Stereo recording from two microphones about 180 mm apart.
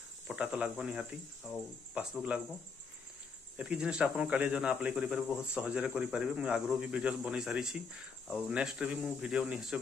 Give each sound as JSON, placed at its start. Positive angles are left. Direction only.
{"t": 0.3, "sound": "speech", "side_deg": -5}
{"t": 3.5, "sound": "speech", "side_deg": -5}